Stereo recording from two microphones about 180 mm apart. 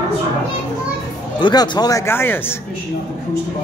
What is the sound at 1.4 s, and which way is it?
Speech, 25° left (ahead or behind).